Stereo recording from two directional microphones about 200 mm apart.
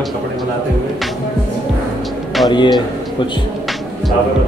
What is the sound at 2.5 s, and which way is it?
Speech, 25° left (ahead or behind).